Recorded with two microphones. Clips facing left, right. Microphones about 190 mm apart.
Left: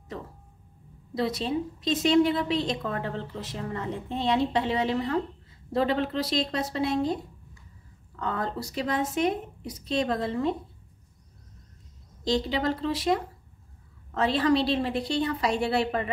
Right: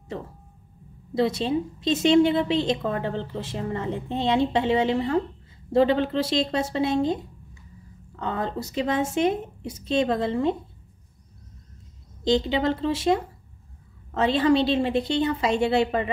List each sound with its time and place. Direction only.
1.1 s a woman's voice: 25° right (ahead or behind)
8.2 s a woman's voice: 20° right (ahead or behind)
12.3 s a woman's voice: 25° right (ahead or behind)